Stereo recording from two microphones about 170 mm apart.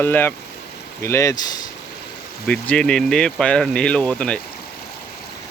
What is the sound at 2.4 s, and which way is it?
Speech, 5° left (ahead or behind).